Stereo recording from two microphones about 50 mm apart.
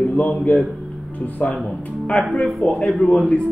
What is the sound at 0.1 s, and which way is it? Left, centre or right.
Speech, left.